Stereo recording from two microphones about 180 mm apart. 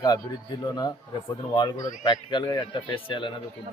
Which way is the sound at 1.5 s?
20° left (ahead or behind).